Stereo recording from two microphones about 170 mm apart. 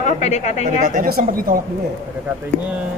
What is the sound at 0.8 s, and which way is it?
Speech, 55° right (ahead or behind).